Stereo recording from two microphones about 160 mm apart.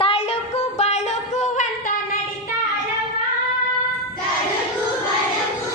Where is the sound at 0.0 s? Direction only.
40° left (ahead or behind).